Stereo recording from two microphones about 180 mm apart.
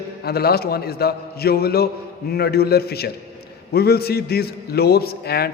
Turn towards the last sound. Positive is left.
turn(degrees=60)  # may be behind; listen again after turning